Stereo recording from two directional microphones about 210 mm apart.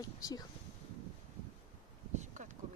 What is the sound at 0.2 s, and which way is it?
Speech, 15° left (ahead or behind).